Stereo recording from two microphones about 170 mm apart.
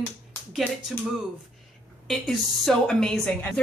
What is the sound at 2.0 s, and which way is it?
Speech, centre (ahead or behind).